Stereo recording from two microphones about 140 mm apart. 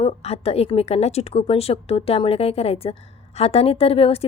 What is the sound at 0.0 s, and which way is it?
Speech, 45° left (ahead or behind).